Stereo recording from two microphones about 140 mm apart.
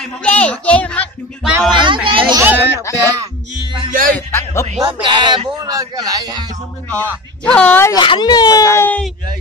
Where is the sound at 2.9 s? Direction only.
20° left (ahead or behind).